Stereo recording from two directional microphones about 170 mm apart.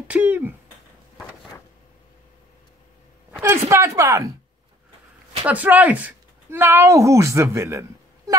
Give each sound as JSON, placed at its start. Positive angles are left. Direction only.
{"t": 0.1, "sound": "speech", "side_deg": -10}
{"t": 3.3, "sound": "speech", "side_deg": -15}
{"t": 5.4, "sound": "speech", "side_deg": -10}